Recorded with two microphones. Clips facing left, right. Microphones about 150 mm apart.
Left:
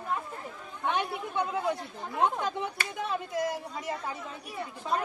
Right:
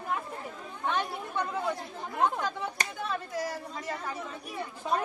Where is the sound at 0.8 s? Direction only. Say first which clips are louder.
Left 1 dB; 15° left (ahead or behind).